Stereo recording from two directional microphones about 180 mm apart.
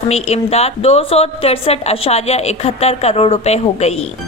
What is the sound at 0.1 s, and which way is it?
A woman's voice, 35° left (ahead or behind).